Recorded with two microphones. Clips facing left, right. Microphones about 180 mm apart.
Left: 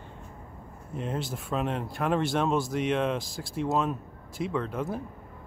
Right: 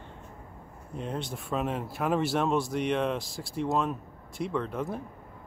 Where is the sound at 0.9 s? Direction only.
Centre (ahead or behind).